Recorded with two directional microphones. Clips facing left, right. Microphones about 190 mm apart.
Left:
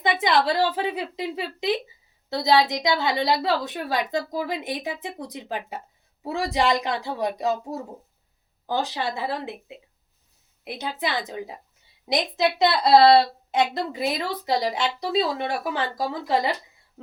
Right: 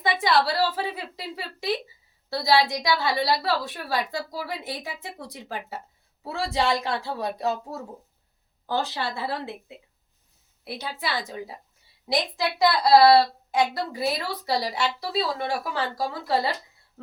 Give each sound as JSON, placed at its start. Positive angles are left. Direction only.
{"t": 0.0, "sound": "a woman's voice", "side_deg": 20}
{"t": 11.0, "sound": "a woman's voice", "side_deg": 20}